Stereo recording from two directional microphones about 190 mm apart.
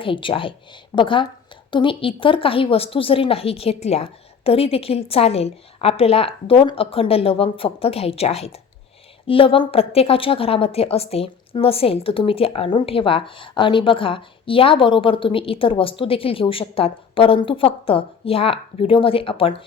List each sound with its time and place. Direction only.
0.0 s a woman's voice: 25° left (ahead or behind)